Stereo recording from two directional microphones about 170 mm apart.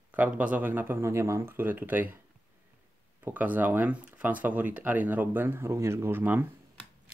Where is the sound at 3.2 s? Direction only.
10° right (ahead or behind).